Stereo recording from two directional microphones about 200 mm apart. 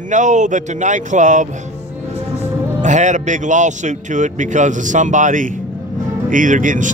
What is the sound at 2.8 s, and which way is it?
Speech, 35° right (ahead or behind).